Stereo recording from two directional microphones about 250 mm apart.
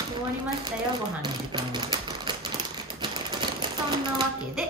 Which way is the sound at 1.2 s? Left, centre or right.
Centre.